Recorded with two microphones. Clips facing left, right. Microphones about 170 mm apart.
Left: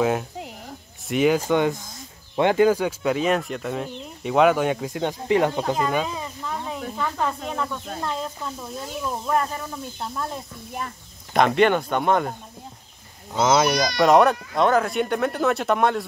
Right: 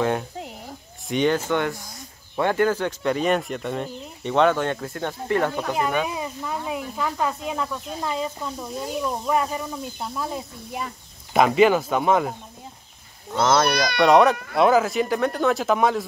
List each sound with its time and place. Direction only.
0.0 s speech: centre (ahead or behind); by 5.6 s 15° left (ahead or behind)
5.8 s speech: 10° right (ahead or behind)
13.7 s speech: 60° right (ahead or behind)
13.9 s speech: centre (ahead or behind)